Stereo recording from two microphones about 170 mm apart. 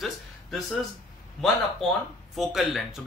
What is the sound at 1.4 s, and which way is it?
Speech, centre (ahead or behind).